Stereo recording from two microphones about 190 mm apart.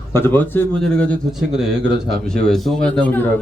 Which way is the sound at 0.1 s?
10° left (ahead or behind).